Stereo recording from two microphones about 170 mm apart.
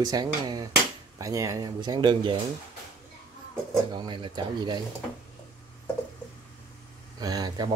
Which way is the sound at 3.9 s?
30° right (ahead or behind).